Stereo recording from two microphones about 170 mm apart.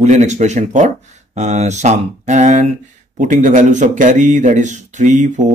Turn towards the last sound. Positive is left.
turn(degrees=-45)  # may be behind; listen again after turning